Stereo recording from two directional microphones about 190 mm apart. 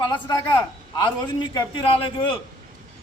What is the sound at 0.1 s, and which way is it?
A man's voice, 25° left (ahead or behind).